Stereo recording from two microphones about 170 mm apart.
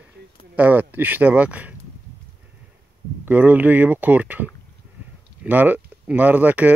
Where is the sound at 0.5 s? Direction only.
10° right (ahead or behind).